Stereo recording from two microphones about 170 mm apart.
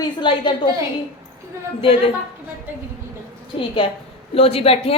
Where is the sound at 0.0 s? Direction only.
30° left (ahead or behind).